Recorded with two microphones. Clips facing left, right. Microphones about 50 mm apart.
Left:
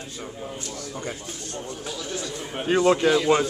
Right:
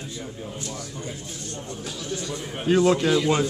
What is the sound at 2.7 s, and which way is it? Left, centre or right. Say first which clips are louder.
Speech: even; centre.